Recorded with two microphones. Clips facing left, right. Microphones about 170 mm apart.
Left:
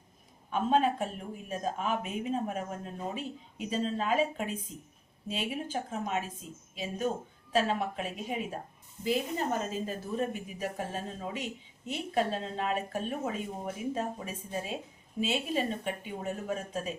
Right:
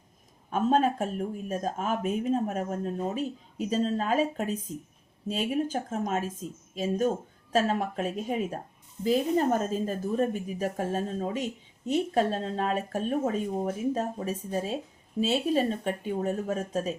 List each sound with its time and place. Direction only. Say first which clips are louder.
0.5 s speech: right 3 dB; 45° right (ahead or behind)